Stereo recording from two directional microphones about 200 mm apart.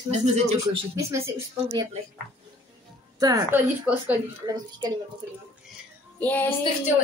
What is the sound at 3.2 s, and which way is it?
Speech, 20° right (ahead or behind).